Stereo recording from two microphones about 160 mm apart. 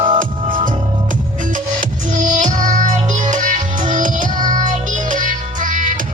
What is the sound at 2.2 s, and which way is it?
Music, 50° right (ahead or behind).